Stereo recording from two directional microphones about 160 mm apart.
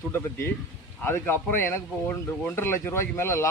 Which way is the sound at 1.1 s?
15° left (ahead or behind).